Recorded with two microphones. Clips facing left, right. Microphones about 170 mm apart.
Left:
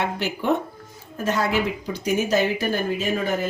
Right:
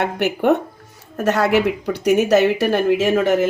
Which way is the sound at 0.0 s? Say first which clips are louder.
Right 7 dB; 65° right (ahead or behind).